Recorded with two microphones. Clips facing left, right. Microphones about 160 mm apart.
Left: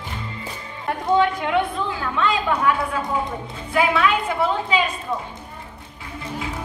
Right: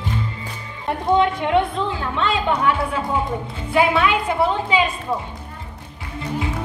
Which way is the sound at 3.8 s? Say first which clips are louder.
Right 2 dB; 25° right (ahead or behind).